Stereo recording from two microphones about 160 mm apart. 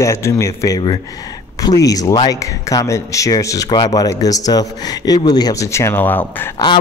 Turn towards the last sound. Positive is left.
turn(degrees=10)  # may be behind; listen again after turning